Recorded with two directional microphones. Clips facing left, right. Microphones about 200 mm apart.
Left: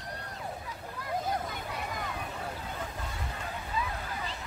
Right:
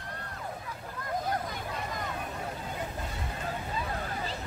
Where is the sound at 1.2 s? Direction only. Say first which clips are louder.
Right 1 dB; 5° left (ahead or behind).